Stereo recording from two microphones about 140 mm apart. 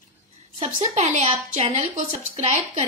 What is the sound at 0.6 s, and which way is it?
A woman's voice, 50° right (ahead or behind).